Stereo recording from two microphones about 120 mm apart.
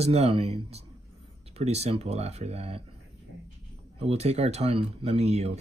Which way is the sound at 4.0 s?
60° right (ahead or behind).